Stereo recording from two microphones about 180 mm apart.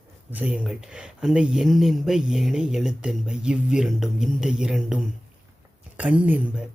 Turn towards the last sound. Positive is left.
turn(degrees=-10)  # may be behind; listen again after turning